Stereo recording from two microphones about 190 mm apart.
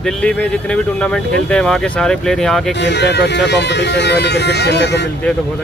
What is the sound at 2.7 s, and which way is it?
Speech, 65° left (ahead or behind).